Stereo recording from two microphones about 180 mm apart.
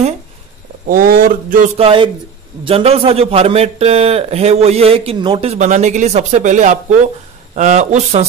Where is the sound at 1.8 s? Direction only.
30° right (ahead or behind).